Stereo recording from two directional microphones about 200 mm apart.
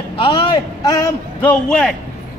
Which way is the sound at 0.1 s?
25° left (ahead or behind).